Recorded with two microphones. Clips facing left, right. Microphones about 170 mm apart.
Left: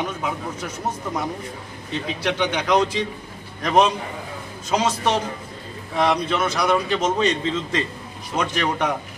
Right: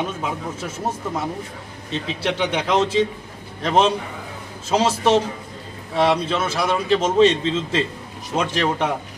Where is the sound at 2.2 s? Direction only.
30° right (ahead or behind).